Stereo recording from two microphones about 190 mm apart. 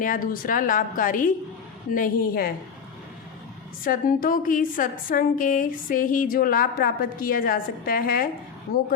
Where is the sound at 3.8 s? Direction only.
45° left (ahead or behind).